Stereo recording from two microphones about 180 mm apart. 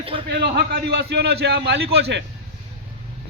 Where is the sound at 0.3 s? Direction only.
60° right (ahead or behind).